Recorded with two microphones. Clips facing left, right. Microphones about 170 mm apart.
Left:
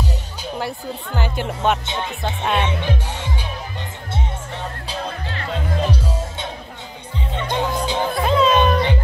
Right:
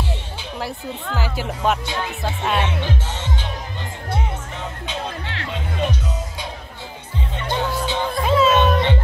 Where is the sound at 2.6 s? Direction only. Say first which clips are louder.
Left 1 dB; 15° left (ahead or behind).